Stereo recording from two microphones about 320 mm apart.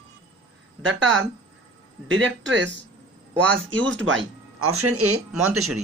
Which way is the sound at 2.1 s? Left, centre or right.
Right.